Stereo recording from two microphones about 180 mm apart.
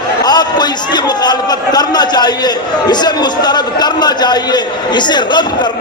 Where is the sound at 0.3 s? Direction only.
25° left (ahead or behind).